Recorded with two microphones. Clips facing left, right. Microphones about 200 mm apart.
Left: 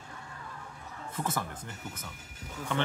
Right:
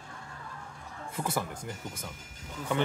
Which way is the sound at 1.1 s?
10° right (ahead or behind).